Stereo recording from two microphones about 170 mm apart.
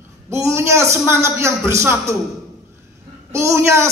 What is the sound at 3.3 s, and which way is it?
Speech, 15° right (ahead or behind).